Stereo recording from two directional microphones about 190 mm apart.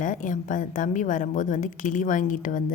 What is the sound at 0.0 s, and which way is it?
Speech, 45° left (ahead or behind).